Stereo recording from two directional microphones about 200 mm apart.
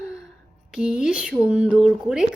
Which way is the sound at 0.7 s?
5° right (ahead or behind).